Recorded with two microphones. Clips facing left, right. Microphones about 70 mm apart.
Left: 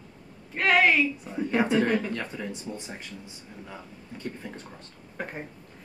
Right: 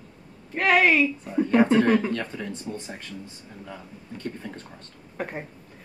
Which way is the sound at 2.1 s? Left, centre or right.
Centre.